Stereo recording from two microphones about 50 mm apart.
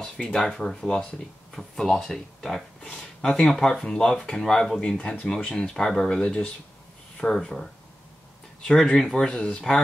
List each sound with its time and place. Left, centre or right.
0.0 s speech: centre
4.8 s speech: centre
9.1 s speech: centre